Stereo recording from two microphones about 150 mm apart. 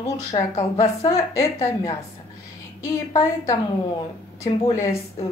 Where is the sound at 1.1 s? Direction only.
20° left (ahead or behind).